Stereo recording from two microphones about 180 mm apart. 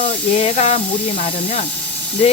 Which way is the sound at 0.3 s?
35° left (ahead or behind).